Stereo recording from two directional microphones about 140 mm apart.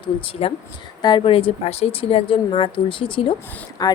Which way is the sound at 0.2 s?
40° left (ahead or behind).